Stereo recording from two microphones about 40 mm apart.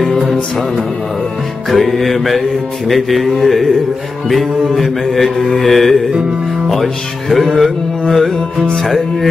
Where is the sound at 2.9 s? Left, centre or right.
Centre.